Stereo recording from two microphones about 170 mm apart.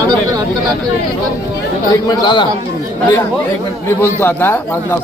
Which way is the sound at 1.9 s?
25° left (ahead or behind).